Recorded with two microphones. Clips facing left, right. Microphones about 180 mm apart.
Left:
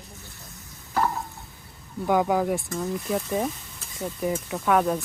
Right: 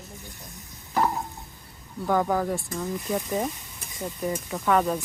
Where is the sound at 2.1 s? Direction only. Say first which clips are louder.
Left 2 dB; 10° left (ahead or behind).